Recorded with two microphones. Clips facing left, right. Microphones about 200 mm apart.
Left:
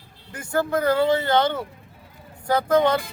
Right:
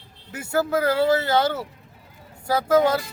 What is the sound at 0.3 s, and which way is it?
Speech, 5° right (ahead or behind).